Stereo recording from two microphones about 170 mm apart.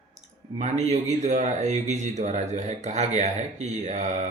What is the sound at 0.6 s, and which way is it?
A man's voice, 40° right (ahead or behind).